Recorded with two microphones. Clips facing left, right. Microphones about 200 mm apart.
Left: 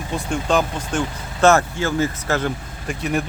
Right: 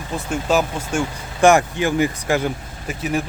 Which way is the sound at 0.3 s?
5° right (ahead or behind).